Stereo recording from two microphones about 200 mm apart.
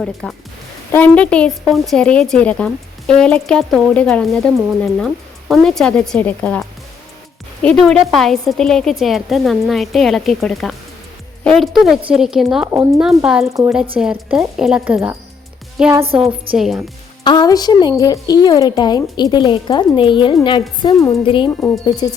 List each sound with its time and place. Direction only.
0.0 s a woman's voice: centre (ahead or behind)
13.5 s speech: 15° right (ahead or behind)
14.0 s a woman's voice: 5° right (ahead or behind)
17.2 s a woman's voice: 20° left (ahead or behind)